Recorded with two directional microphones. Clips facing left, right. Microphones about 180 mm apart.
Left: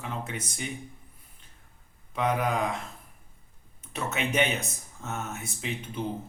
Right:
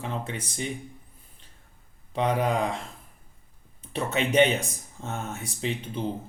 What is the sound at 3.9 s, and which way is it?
Speech, 30° right (ahead or behind).